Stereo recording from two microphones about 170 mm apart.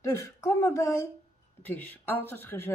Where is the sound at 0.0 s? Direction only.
15° left (ahead or behind).